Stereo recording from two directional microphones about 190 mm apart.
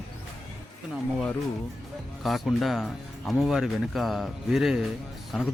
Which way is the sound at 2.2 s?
Centre (ahead or behind).